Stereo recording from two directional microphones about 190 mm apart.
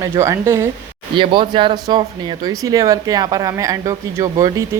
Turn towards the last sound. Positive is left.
turn(degrees=-15)  # may be behind; listen again after turning